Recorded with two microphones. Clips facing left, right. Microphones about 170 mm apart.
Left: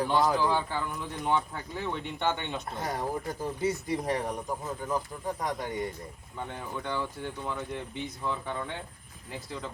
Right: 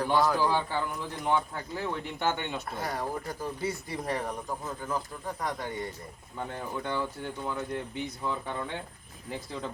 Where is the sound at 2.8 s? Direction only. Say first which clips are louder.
Left 2 dB; 20° left (ahead or behind).